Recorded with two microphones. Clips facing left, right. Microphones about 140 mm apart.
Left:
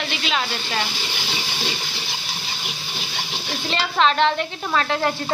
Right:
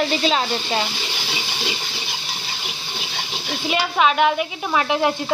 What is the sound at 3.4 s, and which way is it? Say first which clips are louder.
Speech: right 3 dB; 10° right (ahead or behind).